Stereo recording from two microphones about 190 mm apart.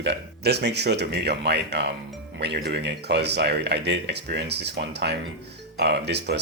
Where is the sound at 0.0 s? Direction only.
60° right (ahead or behind).